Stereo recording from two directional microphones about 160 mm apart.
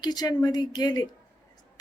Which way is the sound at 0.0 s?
25° left (ahead or behind).